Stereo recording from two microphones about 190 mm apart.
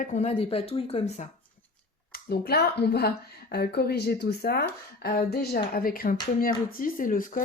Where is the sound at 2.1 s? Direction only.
55° left (ahead or behind).